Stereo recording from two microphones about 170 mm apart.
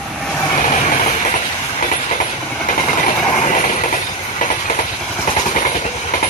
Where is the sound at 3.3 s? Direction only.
45° left (ahead or behind).